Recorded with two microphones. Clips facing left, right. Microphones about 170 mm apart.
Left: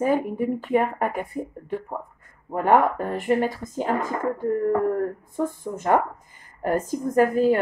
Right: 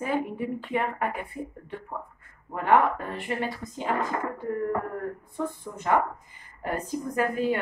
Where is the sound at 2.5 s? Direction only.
40° left (ahead or behind).